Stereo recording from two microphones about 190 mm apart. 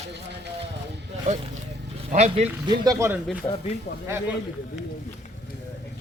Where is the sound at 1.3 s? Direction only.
40° right (ahead or behind).